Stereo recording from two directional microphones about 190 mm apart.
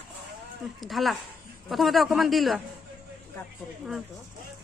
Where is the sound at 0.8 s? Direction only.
Centre (ahead or behind).